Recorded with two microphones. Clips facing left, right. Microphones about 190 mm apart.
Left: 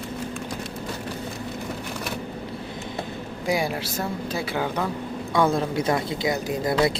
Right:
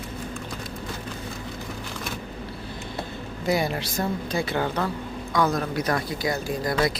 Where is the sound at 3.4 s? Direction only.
10° left (ahead or behind).